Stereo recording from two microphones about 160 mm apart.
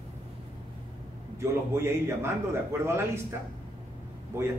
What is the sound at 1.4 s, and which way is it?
Speech, 15° right (ahead or behind).